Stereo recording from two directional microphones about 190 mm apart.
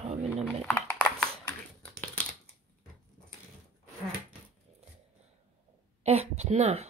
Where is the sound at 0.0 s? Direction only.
35° right (ahead or behind).